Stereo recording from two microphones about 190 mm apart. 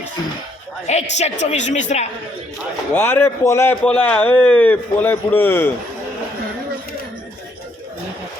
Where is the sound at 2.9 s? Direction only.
10° left (ahead or behind).